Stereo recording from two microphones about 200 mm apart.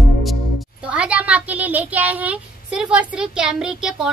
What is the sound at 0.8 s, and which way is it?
Speech, 5° right (ahead or behind).